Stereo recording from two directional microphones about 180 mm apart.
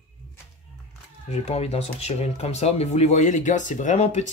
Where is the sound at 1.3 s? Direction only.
35° left (ahead or behind).